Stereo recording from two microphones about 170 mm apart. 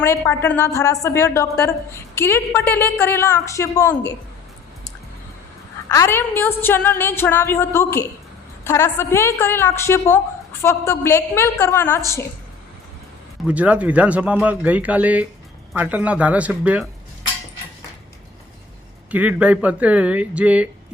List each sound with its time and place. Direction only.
0.0 s a woman's voice: 15° left (ahead or behind)
5.9 s a woman's voice: 15° left (ahead or behind)
13.5 s speech: 10° right (ahead or behind)
19.1 s speech: 10° right (ahead or behind)